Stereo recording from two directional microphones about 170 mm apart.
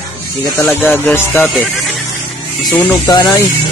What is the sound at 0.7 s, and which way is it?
Music, 15° left (ahead or behind).